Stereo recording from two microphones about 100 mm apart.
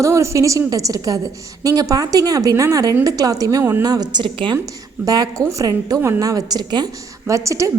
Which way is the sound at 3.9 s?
40° right (ahead or behind).